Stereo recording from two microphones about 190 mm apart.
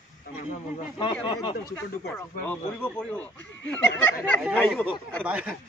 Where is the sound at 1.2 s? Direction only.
25° left (ahead or behind).